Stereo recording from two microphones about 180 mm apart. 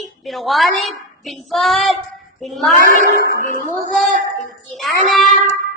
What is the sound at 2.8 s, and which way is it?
Speech, 50° right (ahead or behind).